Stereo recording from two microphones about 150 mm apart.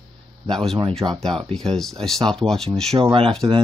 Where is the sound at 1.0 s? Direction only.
20° right (ahead or behind).